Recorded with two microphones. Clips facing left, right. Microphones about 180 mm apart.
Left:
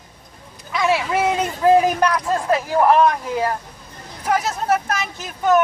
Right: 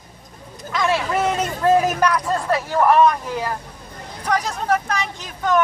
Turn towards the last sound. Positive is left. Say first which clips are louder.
# left 3 dB
turn(degrees=5)  # may be behind; listen again after turning